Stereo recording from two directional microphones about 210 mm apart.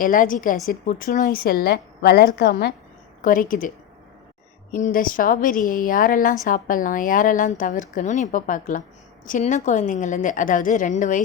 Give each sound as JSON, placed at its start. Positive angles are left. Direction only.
{"t": 0.0, "sound": "a woman's voice", "side_deg": 40}
{"t": 3.2, "sound": "speech", "side_deg": 40}
{"t": 4.7, "sound": "speech", "side_deg": 40}